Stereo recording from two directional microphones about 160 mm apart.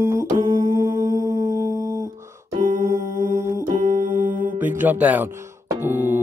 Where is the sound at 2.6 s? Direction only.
50° right (ahead or behind).